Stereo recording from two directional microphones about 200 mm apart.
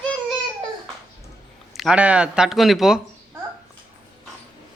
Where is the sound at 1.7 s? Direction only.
Centre (ahead or behind).